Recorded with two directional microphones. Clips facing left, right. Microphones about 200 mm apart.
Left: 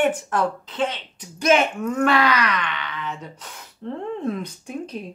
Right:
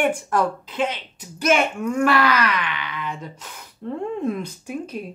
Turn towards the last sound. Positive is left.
turn(degrees=-5)  # may be behind; listen again after turning